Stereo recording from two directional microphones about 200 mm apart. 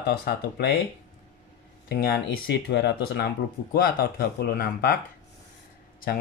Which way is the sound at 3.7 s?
45° left (ahead or behind).